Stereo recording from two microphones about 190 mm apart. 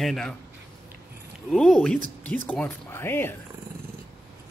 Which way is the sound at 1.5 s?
Centre (ahead or behind).